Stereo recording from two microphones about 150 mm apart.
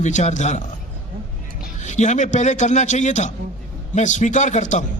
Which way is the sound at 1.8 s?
50° left (ahead or behind).